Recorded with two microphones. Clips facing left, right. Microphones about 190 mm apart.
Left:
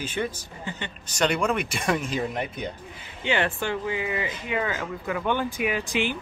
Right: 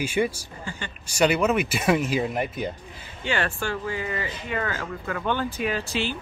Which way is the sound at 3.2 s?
20° left (ahead or behind).